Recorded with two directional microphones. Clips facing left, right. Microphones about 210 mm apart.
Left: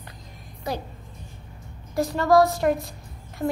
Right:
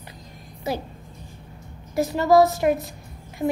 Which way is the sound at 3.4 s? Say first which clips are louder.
Right 2 dB; 15° right (ahead or behind).